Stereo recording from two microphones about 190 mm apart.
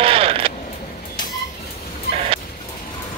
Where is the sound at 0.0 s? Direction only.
30° right (ahead or behind).